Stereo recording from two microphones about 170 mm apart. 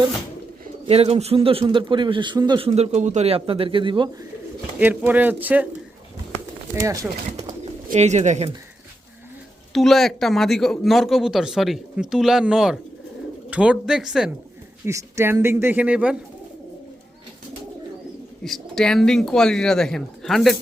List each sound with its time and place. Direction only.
0.9 s a man's voice: 35° right (ahead or behind)
4.8 s speech: 10° right (ahead or behind)
6.7 s speech: 20° right (ahead or behind)
7.6 s speech: 40° right (ahead or behind)
9.7 s speech: centre (ahead or behind)
14.8 s speech: 15° right (ahead or behind)
18.4 s speech: centre (ahead or behind)